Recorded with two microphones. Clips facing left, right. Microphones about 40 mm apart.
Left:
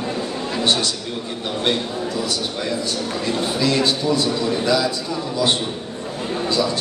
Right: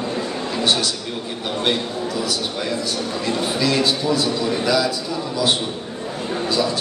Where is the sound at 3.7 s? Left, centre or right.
Centre.